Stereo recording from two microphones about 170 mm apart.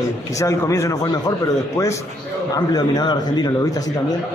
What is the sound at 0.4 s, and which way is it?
Speech, 15° left (ahead or behind).